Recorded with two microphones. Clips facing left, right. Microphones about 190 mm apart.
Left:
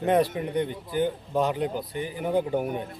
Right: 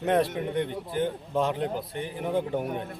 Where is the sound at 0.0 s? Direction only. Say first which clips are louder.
Left 2 dB; centre (ahead or behind).